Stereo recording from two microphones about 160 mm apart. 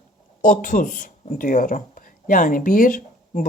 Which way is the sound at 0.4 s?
55° left (ahead or behind).